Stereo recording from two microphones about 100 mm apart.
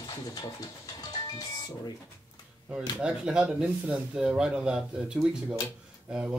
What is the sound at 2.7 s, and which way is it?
Speech, 10° right (ahead or behind).